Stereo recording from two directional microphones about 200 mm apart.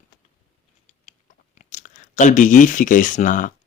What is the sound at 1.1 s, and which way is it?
Chewing, 35° left (ahead or behind).